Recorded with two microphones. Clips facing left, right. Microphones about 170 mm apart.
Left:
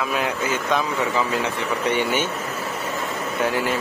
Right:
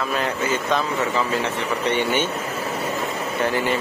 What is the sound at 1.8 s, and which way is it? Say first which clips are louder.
Speech: even; 10° left (ahead or behind).